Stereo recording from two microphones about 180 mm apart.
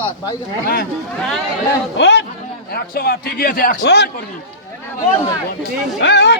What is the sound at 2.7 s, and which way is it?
A man's voice, 60° left (ahead or behind).